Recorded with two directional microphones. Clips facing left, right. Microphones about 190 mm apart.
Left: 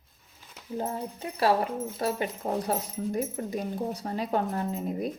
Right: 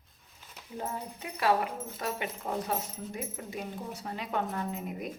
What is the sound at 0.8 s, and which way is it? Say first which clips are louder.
Speech: left 4 dB; 30° left (ahead or behind).